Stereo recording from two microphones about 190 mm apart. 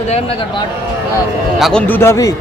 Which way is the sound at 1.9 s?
15° left (ahead or behind).